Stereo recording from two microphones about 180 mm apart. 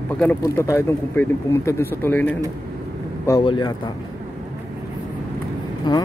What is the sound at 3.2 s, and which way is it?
Speech, 25° left (ahead or behind).